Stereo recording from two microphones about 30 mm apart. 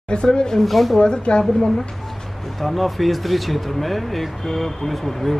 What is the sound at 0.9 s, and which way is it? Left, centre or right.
Speech, left.